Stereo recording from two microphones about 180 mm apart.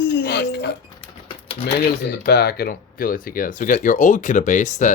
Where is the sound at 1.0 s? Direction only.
30° left (ahead or behind).